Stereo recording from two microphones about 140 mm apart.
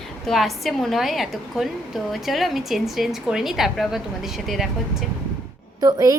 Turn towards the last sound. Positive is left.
turn(degrees=-25)  # may be behind; listen again after turning